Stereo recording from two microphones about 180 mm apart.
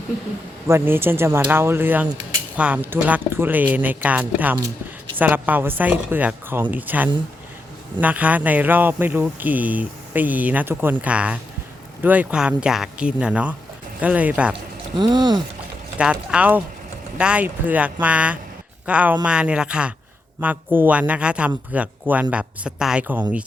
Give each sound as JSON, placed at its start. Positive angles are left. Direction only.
{"t": 0.7, "sound": "speech", "side_deg": -15}
{"t": 4.5, "sound": "a sound", "side_deg": -25}
{"t": 5.1, "sound": "speech", "side_deg": -10}
{"t": 14.9, "sound": "speech", "side_deg": -25}
{"t": 16.0, "sound": "speech", "side_deg": -5}